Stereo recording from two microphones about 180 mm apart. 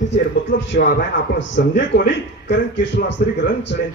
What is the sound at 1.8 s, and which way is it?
Speech, 70° left (ahead or behind).